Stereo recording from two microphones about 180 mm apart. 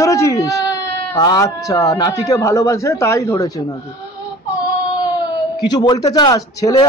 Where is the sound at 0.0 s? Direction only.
15° left (ahead or behind).